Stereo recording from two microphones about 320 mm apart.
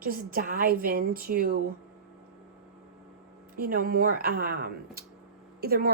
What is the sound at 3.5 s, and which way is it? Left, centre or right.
Speech, right.